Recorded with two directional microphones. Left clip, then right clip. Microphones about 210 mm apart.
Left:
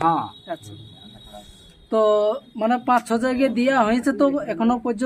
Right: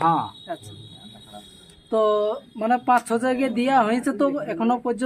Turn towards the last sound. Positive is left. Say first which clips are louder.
# left 1 dB
turn(degrees=25)  # may be behind; listen again after turning